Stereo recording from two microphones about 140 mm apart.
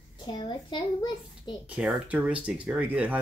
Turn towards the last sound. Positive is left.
turn(degrees=-10)  # may be behind; listen again after turning